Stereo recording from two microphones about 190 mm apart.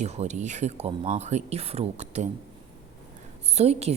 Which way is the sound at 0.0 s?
35° right (ahead or behind).